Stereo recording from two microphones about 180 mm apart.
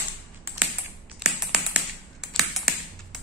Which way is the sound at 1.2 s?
5° right (ahead or behind).